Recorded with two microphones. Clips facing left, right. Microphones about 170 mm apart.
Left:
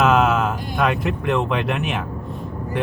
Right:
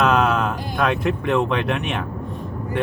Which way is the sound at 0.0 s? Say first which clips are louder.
Left 1 dB; 5° left (ahead or behind).